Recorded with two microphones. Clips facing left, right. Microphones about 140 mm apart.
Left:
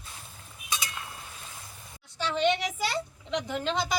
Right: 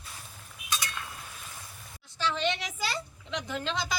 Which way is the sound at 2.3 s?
15° left (ahead or behind).